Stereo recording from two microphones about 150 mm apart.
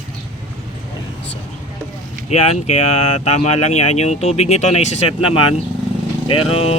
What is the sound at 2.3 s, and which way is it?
Speech, 45° left (ahead or behind).